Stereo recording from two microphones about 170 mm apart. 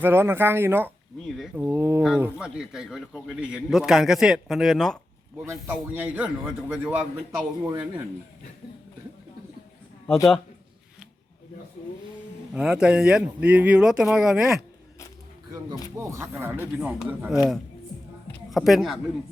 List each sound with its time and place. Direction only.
0.0 s a man's voice: 15° right (ahead or behind)
5.6 s a man's voice: 10° right (ahead or behind)
7.6 s a man's voice: 15° right (ahead or behind)
12.5 s a man's voice: 5° right (ahead or behind)
16.0 s a man's voice: 15° right (ahead or behind)
18.5 s a man's voice: centre (ahead or behind)